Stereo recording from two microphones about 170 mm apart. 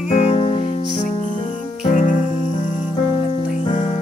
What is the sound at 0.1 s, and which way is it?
Music, 35° left (ahead or behind).